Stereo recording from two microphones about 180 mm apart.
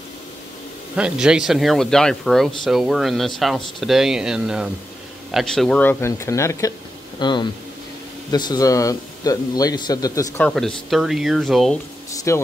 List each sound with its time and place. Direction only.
0.9 s a man's voice: 5° right (ahead or behind)
12.3 s speech: 15° left (ahead or behind)